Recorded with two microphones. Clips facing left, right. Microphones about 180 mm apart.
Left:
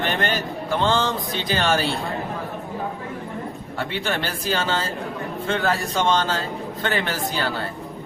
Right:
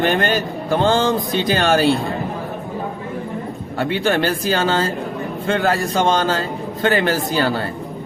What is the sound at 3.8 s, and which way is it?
A man's voice, 45° right (ahead or behind).